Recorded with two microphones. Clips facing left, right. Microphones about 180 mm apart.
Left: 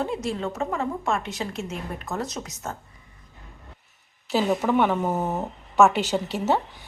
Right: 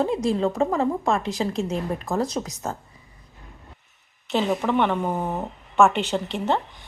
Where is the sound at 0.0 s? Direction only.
35° right (ahead or behind).